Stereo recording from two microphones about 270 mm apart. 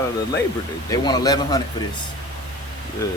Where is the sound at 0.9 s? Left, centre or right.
Centre.